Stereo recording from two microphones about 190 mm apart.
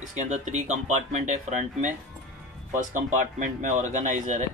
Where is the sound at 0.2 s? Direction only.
35° right (ahead or behind).